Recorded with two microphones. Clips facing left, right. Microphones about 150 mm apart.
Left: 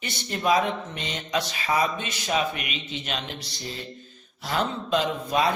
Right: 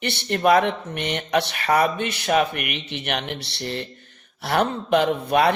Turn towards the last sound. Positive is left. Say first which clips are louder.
# right 5 dB
turn(degrees=-65)  # may be behind; listen again after turning